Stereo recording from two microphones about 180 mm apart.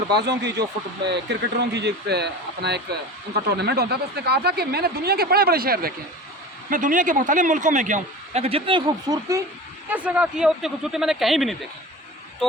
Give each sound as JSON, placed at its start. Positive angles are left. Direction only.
{"t": 0.1, "sound": "a man's voice", "side_deg": -65}
{"t": 9.9, "sound": "speech", "side_deg": -5}